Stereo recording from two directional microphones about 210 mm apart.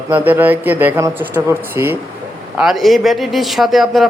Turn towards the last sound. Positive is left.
turn(degrees=0)  # may be behind; listen again after turning